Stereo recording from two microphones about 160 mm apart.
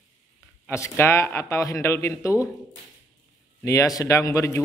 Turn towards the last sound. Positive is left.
turn(degrees=20)  # may be behind; listen again after turning